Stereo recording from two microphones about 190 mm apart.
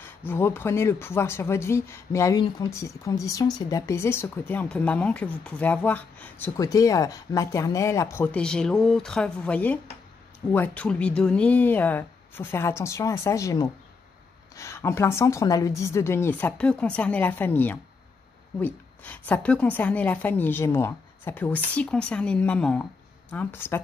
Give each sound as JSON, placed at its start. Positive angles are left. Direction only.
{"t": 0.0, "sound": "speech", "side_deg": 10}